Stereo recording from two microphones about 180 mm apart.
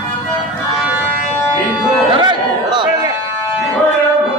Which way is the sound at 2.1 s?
25° right (ahead or behind).